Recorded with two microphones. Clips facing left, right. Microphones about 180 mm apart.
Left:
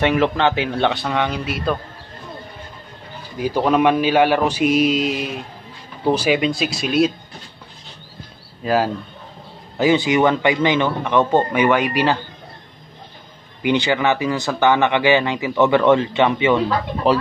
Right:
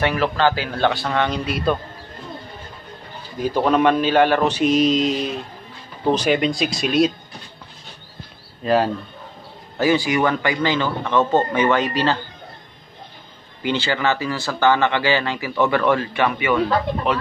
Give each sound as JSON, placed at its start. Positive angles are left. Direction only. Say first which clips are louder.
{"t": 0.0, "sound": "speech", "louder": "left 2 dB", "side_deg": 20}
{"t": 1.0, "sound": "speech", "louder": "even", "side_deg": 10}
{"t": 3.3, "sound": "speech", "louder": "left 1 dB", "side_deg": 10}
{"t": 8.6, "sound": "speech", "louder": "right 1 dB", "side_deg": 5}
{"t": 9.8, "sound": "speech", "louder": "left 2 dB", "side_deg": 20}
{"t": 13.6, "sound": "speech", "louder": "left 4 dB", "side_deg": 15}